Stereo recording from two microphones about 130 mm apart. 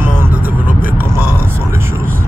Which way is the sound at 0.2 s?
15° right (ahead or behind).